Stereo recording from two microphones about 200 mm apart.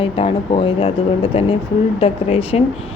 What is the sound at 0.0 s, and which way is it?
Speech, 25° left (ahead or behind).